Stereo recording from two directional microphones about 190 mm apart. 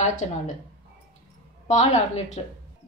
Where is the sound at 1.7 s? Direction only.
35° left (ahead or behind).